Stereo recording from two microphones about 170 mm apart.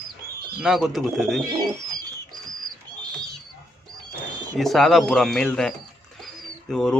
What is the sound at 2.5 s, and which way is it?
Bird, 25° right (ahead or behind).